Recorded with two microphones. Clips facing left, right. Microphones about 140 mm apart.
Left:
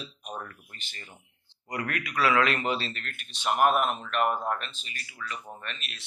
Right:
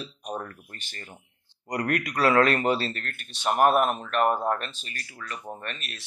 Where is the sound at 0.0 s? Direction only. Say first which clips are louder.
Right 5 dB; 40° right (ahead or behind).